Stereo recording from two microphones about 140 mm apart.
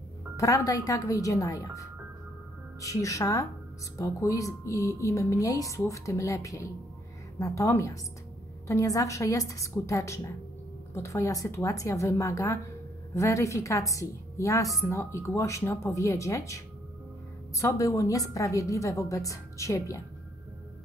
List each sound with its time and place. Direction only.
0.4 s a woman's voice: 25° left (ahead or behind)